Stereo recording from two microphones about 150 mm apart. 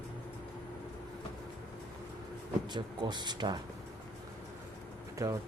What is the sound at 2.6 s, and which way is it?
Speech, 30° right (ahead or behind).